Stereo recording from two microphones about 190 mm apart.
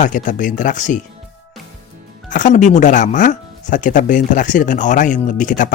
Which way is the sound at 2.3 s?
40° left (ahead or behind).